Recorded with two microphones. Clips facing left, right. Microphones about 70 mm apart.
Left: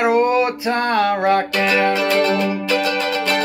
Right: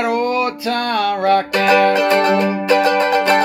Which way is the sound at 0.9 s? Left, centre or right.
Left.